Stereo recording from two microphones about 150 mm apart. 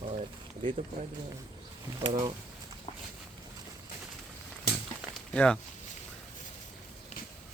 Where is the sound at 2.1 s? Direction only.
45° right (ahead or behind).